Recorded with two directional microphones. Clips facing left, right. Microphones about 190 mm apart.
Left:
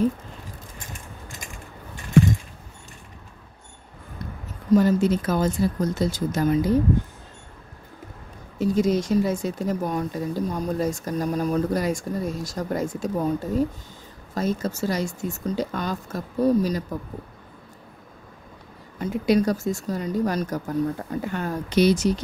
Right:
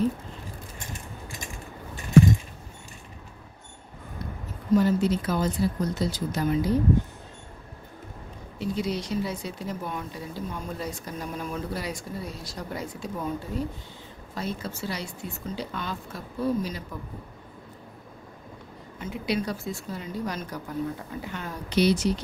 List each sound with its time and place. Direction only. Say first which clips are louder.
4.7 s speech: left 3 dB; 45° left (ahead or behind)
8.5 s speech: left 8 dB; 45° left (ahead or behind)
18.9 s speech: left 8 dB; 40° left (ahead or behind)